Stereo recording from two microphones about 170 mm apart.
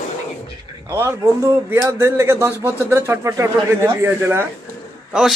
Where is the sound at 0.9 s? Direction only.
15° right (ahead or behind).